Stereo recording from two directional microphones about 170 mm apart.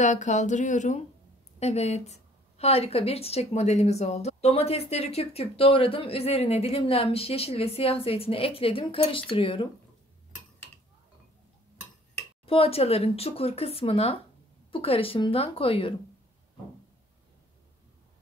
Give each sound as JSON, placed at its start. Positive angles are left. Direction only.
{"t": 0.0, "sound": "a woman's voice", "side_deg": 45}
{"t": 12.4, "sound": "a woman's voice", "side_deg": 35}